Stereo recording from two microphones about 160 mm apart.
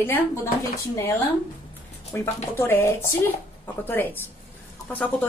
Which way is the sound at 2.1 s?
15° left (ahead or behind).